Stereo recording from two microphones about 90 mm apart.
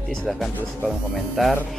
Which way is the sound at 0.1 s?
5° left (ahead or behind).